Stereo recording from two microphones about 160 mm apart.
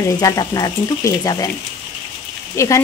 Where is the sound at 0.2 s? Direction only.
25° left (ahead or behind).